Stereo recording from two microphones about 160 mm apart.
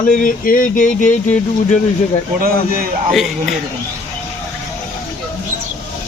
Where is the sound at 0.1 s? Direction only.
55° left (ahead or behind).